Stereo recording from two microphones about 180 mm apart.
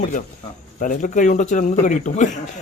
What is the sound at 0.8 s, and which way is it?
Speech, 45° left (ahead or behind).